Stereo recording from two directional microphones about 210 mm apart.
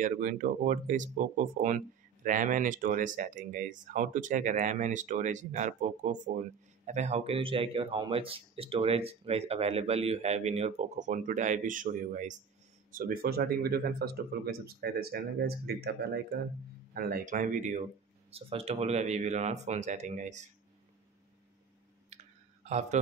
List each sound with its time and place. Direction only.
0.0 s a man's voice: 35° right (ahead or behind)
22.1 s clicking: 35° right (ahead or behind)